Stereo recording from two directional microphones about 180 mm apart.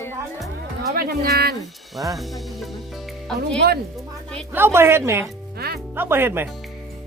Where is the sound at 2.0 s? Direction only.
20° right (ahead or behind).